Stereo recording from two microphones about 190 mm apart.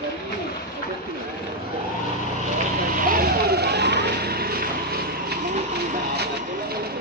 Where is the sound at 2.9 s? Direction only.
50° right (ahead or behind).